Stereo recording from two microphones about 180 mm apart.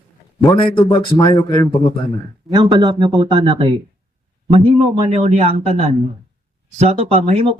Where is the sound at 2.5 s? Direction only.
25° right (ahead or behind).